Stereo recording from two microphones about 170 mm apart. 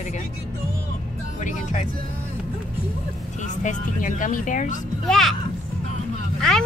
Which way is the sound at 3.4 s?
50° left (ahead or behind).